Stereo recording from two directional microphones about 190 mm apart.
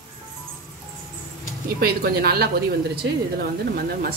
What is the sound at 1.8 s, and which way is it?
Speech, 55° right (ahead or behind).